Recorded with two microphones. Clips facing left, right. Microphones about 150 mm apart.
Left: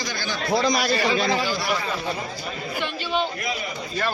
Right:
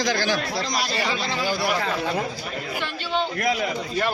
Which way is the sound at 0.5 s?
65° left (ahead or behind).